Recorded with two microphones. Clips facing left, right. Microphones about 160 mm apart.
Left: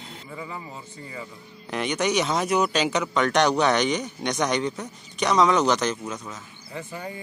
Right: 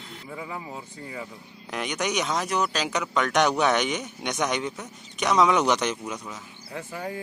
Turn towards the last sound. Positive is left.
turn(degrees=0)  # may be behind; listen again after turning